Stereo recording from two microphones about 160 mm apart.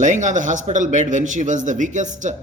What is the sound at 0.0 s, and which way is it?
A man's voice, 50° right (ahead or behind).